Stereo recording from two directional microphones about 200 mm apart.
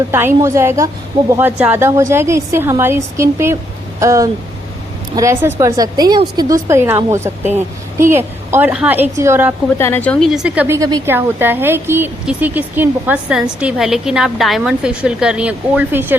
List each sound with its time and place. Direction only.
0.1 s speech: 10° right (ahead or behind)
9.7 s a woman's voice: 10° left (ahead or behind); by 16.1 s 10° right (ahead or behind)